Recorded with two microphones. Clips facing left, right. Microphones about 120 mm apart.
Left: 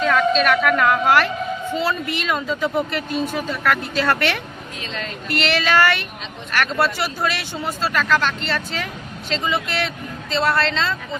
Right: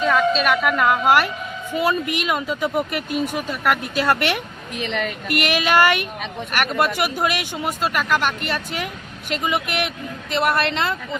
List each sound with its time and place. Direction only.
0.0 s a woman's voice: 5° right (ahead or behind)